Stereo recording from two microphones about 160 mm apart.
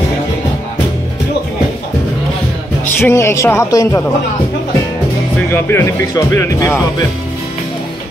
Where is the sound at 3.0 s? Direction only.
15° left (ahead or behind).